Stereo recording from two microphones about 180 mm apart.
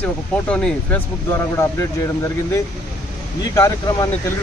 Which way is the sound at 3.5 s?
20° left (ahead or behind).